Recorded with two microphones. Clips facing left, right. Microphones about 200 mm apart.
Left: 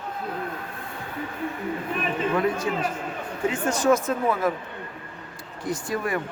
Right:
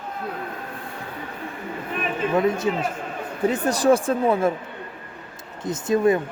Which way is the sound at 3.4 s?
35° right (ahead or behind).